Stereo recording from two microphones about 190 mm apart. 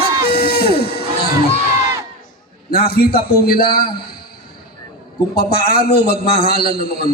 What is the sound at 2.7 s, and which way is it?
A man's voice, 55° left (ahead or behind).